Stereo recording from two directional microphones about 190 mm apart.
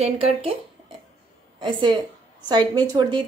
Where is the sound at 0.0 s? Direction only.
30° right (ahead or behind).